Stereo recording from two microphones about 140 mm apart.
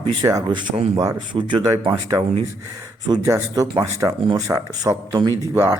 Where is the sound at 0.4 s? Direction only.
30° right (ahead or behind).